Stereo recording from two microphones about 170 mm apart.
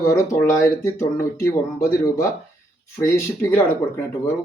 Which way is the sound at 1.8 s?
20° left (ahead or behind).